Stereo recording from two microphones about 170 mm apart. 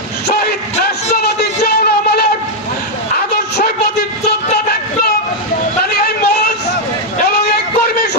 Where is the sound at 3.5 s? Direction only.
70° left (ahead or behind).